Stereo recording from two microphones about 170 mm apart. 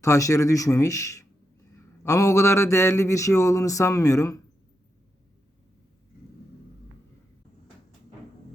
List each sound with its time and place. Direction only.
0.0 s speech: 20° left (ahead or behind)